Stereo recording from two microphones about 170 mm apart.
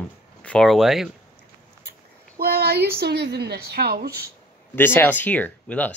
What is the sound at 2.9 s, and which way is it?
A woman's voice, 75° right (ahead or behind).